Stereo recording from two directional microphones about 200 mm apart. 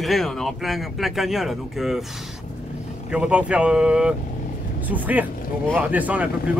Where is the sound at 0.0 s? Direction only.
Centre (ahead or behind).